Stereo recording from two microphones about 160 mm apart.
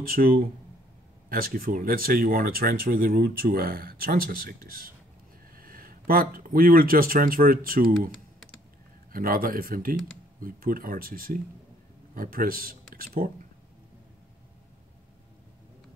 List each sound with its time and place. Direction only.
0.0 s speech: 65° right (ahead or behind)
9.1 s speech: 65° right (ahead or behind)